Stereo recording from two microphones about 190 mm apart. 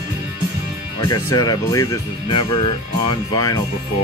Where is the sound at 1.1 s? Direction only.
20° left (ahead or behind).